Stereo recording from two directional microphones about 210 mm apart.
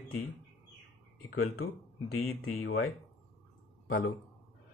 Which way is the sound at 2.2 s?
90° left.